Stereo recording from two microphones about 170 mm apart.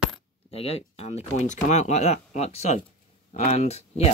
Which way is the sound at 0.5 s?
35° left (ahead or behind).